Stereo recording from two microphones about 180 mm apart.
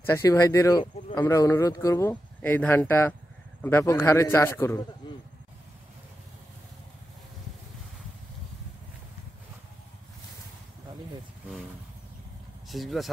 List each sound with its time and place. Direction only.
0.0 s speech: 15° left (ahead or behind)
12.6 s speech: centre (ahead or behind)